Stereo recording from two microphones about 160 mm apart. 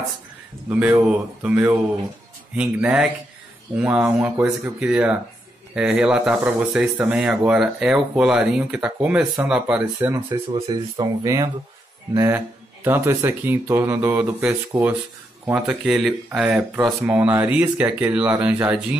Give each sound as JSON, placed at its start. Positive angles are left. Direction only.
{"t": 0.7, "sound": "speech", "side_deg": -10}